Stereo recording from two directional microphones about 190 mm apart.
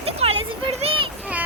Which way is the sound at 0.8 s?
25° right (ahead or behind).